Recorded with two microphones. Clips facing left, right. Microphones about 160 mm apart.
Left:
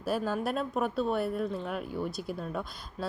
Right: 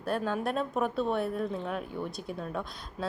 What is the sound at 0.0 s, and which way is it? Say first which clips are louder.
Speech: even; 5° left (ahead or behind).